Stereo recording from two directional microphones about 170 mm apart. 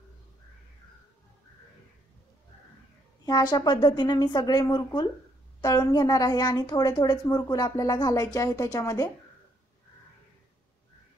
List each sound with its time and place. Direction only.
3.3 s a woman's voice: 25° left (ahead or behind)